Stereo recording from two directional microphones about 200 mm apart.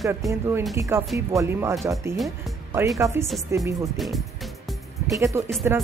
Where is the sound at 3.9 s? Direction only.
Centre (ahead or behind).